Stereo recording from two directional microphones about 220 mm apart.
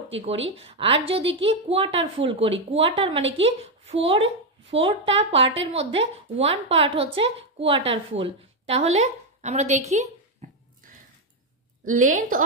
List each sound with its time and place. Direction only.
0.1 s a woman's voice: 25° right (ahead or behind)
10.4 s a sound: 35° right (ahead or behind)
11.8 s speech: 35° right (ahead or behind)